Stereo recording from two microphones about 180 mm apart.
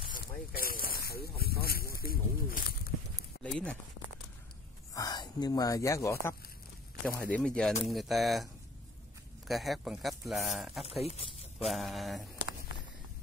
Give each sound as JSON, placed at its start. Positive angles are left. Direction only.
{"t": 0.1, "sound": "speech", "side_deg": 55}
{"t": 2.0, "sound": "a sound", "side_deg": 55}
{"t": 3.4, "sound": "speech", "side_deg": 5}
{"t": 4.9, "sound": "speech", "side_deg": 20}
{"t": 7.2, "sound": "speech", "side_deg": 5}
{"t": 9.5, "sound": "speech", "side_deg": 0}
{"t": 10.9, "sound": "speech", "side_deg": 35}
{"t": 11.6, "sound": "speech", "side_deg": 0}